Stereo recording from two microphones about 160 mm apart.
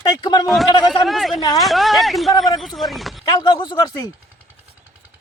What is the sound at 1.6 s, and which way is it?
Speech, centre (ahead or behind).